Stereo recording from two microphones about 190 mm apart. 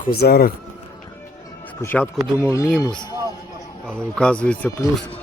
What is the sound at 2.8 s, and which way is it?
Speech, 20° left (ahead or behind).